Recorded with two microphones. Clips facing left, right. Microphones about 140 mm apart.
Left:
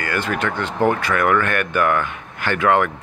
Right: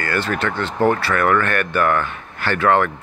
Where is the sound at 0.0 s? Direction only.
10° left (ahead or behind).